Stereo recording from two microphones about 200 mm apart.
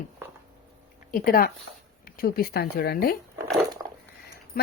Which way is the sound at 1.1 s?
45° left (ahead or behind).